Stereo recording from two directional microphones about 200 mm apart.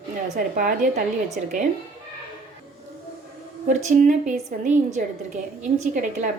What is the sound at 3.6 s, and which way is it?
Speech, 40° right (ahead or behind).